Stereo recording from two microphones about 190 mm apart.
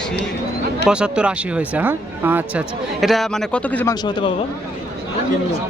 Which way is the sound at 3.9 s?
25° left (ahead or behind).